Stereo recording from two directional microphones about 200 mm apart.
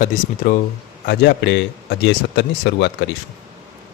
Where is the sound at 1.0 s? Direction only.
55° left (ahead or behind).